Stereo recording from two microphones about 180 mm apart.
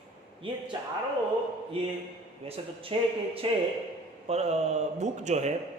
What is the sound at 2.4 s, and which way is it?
A man's voice, 30° right (ahead or behind).